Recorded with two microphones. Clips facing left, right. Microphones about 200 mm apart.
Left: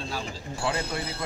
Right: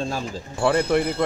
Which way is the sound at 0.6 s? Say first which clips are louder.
Right 11 dB; 55° right (ahead or behind).